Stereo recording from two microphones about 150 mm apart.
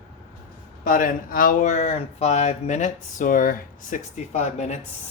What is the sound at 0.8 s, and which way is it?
Speech, 65° left (ahead or behind).